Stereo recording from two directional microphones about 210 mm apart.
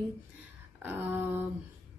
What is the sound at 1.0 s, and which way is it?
Speech, 10° right (ahead or behind).